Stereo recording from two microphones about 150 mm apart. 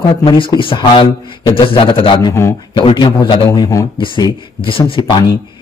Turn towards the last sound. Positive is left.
turn(degrees=30)  # may be behind; listen again after turning